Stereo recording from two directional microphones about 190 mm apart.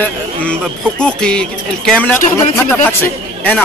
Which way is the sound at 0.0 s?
5° left (ahead or behind).